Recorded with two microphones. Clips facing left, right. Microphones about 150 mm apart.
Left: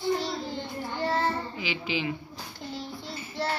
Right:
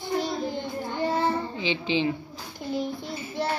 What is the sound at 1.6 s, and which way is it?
Speech, 25° right (ahead or behind).